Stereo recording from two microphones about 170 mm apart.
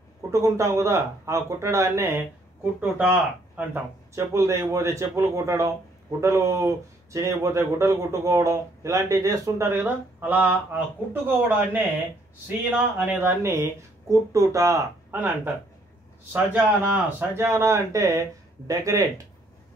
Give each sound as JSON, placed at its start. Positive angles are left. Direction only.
{"t": 0.3, "sound": "speech", "side_deg": -20}
{"t": 16.5, "sound": "speech", "side_deg": -10}